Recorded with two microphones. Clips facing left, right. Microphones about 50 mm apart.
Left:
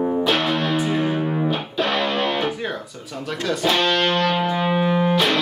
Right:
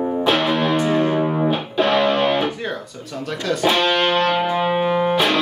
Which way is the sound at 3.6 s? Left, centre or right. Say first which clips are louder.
Right 2 dB; centre.